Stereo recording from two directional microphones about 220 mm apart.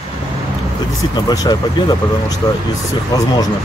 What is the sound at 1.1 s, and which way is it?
Speech, 15° left (ahead or behind).